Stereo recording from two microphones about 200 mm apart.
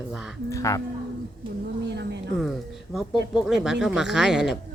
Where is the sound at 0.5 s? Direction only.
15° left (ahead or behind).